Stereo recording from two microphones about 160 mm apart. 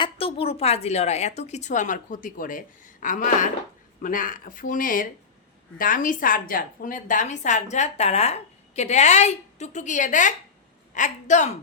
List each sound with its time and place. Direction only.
0.0 s a woman's voice: 35° left (ahead or behind)